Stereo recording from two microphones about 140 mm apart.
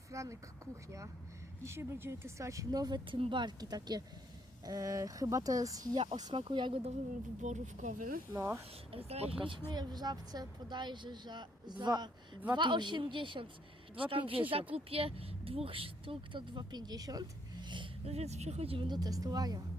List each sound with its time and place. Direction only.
0.1 s speech: 20° right (ahead or behind); by 6.9 s 40° right (ahead or behind)
7.4 s speech: 60° right (ahead or behind)
8.3 s speech: 15° right (ahead or behind)
8.9 s speech: 45° right (ahead or behind)
18.0 s speech: 50° right (ahead or behind); by 19.6 s 30° right (ahead or behind)